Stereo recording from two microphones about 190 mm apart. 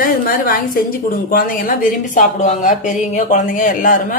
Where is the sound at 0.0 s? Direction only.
50° left (ahead or behind).